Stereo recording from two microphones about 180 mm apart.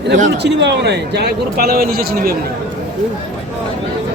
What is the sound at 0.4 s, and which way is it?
A man's voice, 70° right (ahead or behind).